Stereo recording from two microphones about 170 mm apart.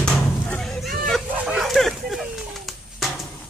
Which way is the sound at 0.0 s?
5° left (ahead or behind).